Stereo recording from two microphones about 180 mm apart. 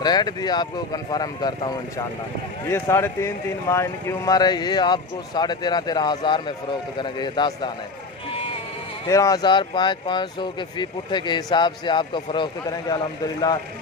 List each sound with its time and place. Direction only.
0.0 s a man's voice: 25° left (ahead or behind)
9.0 s a man's voice: 20° left (ahead or behind)